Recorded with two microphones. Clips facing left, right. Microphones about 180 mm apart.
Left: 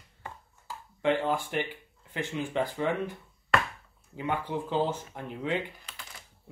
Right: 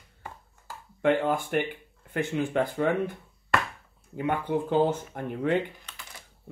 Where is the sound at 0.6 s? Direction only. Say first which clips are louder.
Right 3 dB; 55° right (ahead or behind).